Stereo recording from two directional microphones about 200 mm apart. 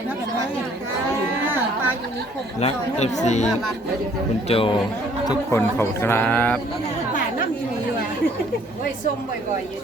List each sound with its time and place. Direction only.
2.6 s speech: 30° left (ahead or behind)
5.3 s speech: 15° left (ahead or behind)